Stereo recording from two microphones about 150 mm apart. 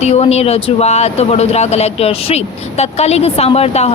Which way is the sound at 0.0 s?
45° left (ahead or behind).